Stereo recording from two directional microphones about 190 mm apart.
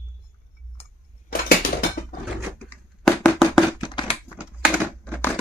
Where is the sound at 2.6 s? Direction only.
5° left (ahead or behind).